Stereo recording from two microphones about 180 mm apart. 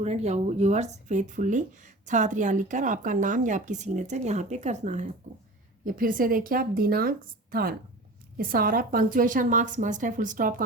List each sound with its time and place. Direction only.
0.0 s speech: 40° right (ahead or behind)